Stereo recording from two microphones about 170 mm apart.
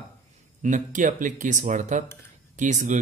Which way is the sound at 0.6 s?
45° right (ahead or behind).